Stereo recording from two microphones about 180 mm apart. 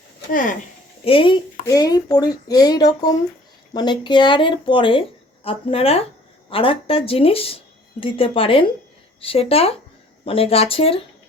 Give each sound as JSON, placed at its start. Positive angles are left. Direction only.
{"t": 1.0, "sound": "a woman's voice", "side_deg": 30}